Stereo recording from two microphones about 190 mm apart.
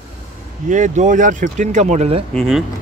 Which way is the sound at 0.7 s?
40° right (ahead or behind).